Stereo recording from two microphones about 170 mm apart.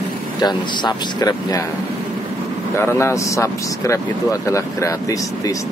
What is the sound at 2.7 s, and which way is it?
Speech, 15° left (ahead or behind).